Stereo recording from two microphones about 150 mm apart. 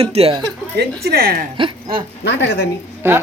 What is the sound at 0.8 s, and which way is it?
Speech, 85° right.